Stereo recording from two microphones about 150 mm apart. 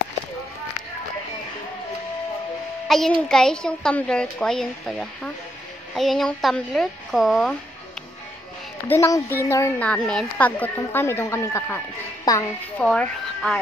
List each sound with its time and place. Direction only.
2.9 s a child's voice: centre (ahead or behind)
8.8 s a woman's voice: 15° left (ahead or behind)
9.8 s a woman's voice: 5° left (ahead or behind)
12.8 s a woman's voice: 5° left (ahead or behind)